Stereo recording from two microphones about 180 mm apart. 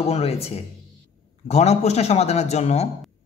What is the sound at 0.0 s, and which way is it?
Speech, 35° left (ahead or behind).